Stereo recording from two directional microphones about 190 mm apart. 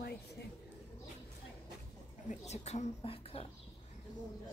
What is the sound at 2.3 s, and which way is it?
A woman's voice, 35° left (ahead or behind).